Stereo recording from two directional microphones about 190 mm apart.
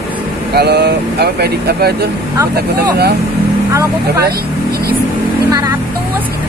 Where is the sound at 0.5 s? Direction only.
60° right (ahead or behind).